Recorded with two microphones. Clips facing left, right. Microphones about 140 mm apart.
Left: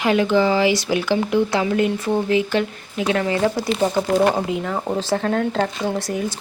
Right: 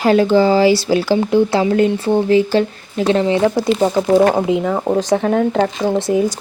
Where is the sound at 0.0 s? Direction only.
35° right (ahead or behind); by 5.9 s 10° right (ahead or behind).